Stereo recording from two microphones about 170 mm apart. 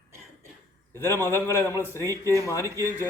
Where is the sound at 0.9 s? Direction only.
15° left (ahead or behind).